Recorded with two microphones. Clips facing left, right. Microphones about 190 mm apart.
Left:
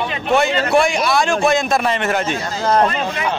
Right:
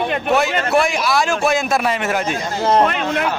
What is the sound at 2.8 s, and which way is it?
Speech, 70° right (ahead or behind).